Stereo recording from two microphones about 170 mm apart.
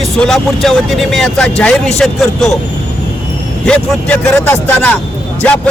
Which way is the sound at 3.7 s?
5° left (ahead or behind).